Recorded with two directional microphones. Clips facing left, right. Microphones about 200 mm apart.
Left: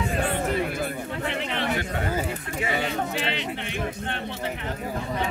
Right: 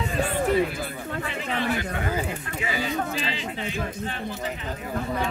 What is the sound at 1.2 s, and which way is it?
Chatter, 70° left (ahead or behind).